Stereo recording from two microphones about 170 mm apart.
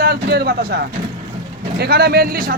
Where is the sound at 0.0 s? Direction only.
65° right (ahead or behind).